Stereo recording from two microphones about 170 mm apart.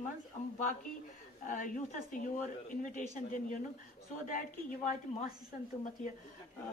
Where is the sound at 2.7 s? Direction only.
50° left (ahead or behind).